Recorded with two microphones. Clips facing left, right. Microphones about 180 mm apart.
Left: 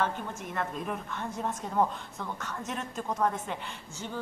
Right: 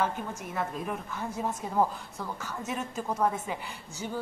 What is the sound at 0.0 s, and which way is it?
A woman's voice, 5° right (ahead or behind).